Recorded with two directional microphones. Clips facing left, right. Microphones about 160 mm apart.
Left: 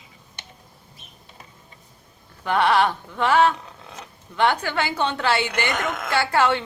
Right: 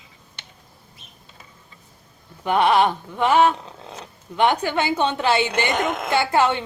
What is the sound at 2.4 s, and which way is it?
A woman's voice, 15° right (ahead or behind).